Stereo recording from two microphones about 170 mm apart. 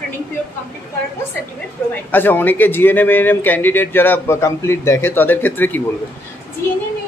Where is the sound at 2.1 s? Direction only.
10° left (ahead or behind).